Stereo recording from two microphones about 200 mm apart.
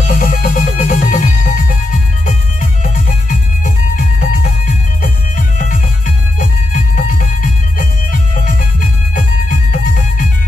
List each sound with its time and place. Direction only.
0.0 s music: 40° left (ahead or behind)
2.8 s music: 40° left (ahead or behind)
5.6 s music: 40° left (ahead or behind)